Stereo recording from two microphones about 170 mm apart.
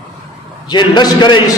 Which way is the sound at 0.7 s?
25° left (ahead or behind).